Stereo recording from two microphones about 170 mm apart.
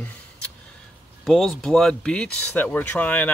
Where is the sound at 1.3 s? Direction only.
Centre (ahead or behind).